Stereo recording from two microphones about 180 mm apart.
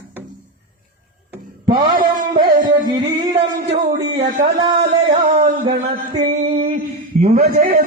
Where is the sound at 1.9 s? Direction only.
50° right (ahead or behind).